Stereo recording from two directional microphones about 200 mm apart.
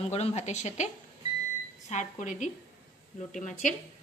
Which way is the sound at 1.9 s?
40° left (ahead or behind).